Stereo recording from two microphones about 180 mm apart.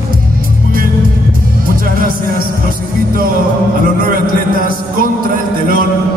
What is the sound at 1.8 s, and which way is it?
Music, 55° right (ahead or behind).